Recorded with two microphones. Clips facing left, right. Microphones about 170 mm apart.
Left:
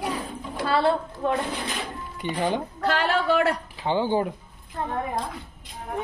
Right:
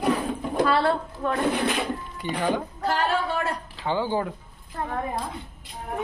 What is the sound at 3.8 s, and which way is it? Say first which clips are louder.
Speech: left 2 dB; 20° left (ahead or behind).